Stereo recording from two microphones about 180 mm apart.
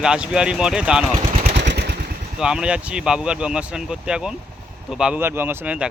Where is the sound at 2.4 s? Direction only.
5° right (ahead or behind).